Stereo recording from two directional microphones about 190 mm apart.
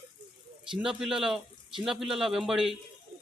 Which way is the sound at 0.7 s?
Centre (ahead or behind).